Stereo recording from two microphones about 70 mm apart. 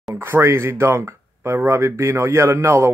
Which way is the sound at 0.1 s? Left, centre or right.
Right.